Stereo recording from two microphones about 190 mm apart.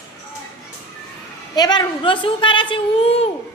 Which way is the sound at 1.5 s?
20° left (ahead or behind).